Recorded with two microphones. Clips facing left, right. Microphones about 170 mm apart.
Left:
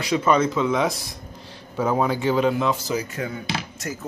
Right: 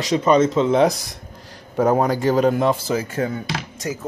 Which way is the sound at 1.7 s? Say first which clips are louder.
Right 4 dB; 45° right (ahead or behind).